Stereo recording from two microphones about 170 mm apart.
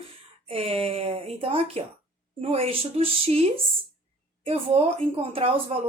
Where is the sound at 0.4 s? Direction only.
35° right (ahead or behind).